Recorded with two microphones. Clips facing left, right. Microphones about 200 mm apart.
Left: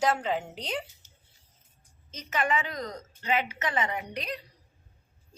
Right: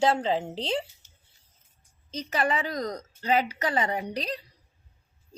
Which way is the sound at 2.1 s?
35° right (ahead or behind).